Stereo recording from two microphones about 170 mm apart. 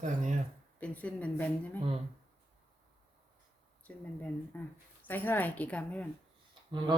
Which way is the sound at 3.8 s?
10° left (ahead or behind).